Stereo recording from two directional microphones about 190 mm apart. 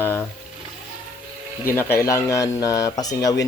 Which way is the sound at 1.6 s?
10° left (ahead or behind).